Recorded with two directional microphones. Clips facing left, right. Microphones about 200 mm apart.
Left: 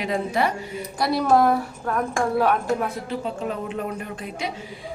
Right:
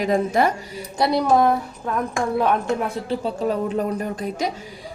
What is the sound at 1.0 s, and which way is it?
Speech, 20° right (ahead or behind).